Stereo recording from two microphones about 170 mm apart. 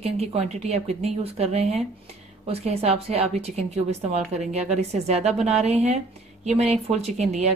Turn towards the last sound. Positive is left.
turn(degrees=-40)  # may be behind; listen again after turning